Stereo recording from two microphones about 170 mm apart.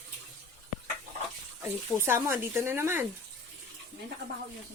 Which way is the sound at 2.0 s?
15° right (ahead or behind).